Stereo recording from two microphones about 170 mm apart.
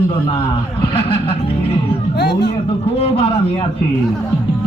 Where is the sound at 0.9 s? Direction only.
35° left (ahead or behind).